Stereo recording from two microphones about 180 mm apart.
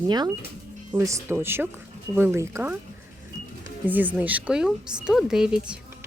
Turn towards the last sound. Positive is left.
turn(degrees=-5)  # may be behind; listen again after turning